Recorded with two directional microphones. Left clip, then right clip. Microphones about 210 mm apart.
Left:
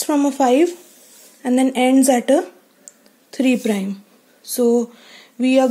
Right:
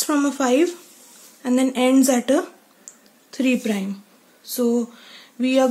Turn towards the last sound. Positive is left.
turn(degrees=15)  # may be behind; listen again after turning